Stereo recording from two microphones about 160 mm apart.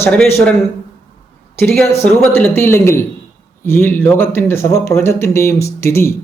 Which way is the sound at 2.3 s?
15° left (ahead or behind).